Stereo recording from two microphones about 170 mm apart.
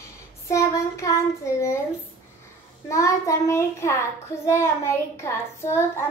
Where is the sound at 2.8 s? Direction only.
20° left (ahead or behind).